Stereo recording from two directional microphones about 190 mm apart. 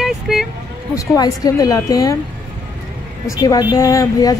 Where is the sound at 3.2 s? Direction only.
20° left (ahead or behind).